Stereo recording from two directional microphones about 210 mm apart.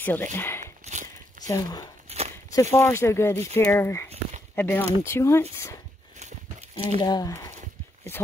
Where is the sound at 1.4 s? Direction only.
15° left (ahead or behind).